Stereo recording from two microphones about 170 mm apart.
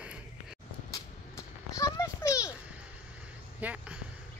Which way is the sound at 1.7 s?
20° left (ahead or behind).